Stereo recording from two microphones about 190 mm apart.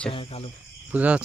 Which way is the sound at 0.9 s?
5° right (ahead or behind).